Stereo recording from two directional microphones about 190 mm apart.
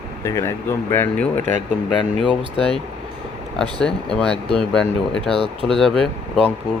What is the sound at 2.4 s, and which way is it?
Speech, 25° right (ahead or behind).